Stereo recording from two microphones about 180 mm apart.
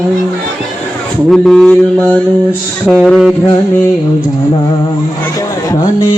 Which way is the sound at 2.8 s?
Centre (ahead or behind).